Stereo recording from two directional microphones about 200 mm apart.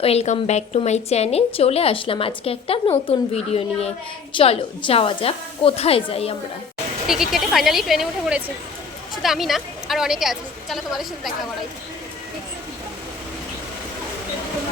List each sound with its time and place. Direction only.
0.0 s a woman's voice: 30° left (ahead or behind)
7.1 s a woman's voice: centre (ahead or behind)